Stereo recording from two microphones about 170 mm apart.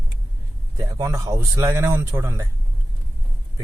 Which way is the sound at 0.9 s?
20° right (ahead or behind).